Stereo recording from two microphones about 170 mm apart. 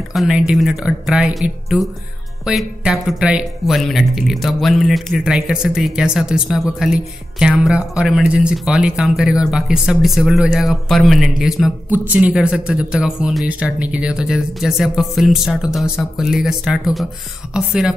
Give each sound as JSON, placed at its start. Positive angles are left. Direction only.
{"t": 0.1, "sound": "speech", "side_deg": 0}